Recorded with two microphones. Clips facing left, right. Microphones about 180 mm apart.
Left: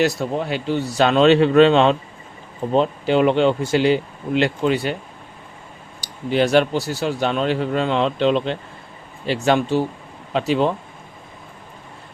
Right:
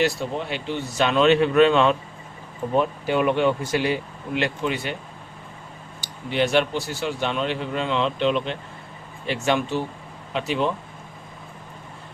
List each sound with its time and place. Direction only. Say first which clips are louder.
0.0 s speech: left 4 dB; 40° left (ahead or behind)
6.0 s speech: left 4 dB; 40° left (ahead or behind)